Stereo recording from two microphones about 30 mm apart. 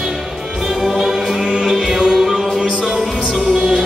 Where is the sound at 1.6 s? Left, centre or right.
Centre.